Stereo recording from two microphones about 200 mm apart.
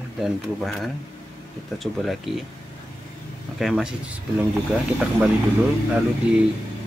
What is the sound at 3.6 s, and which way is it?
Speech, centre (ahead or behind).